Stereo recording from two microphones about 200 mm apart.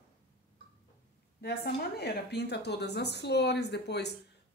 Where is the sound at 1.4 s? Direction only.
55° left (ahead or behind).